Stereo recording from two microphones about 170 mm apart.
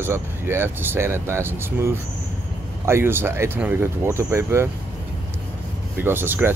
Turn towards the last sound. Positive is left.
turn(degrees=-10)  # may be behind; listen again after turning